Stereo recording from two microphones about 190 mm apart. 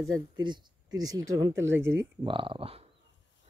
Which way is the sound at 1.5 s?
80° right.